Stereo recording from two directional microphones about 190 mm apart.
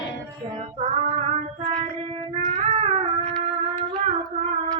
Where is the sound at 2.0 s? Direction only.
35° right (ahead or behind).